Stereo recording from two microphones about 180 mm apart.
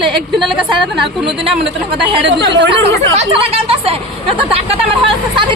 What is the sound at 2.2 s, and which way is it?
Speech, 80° right.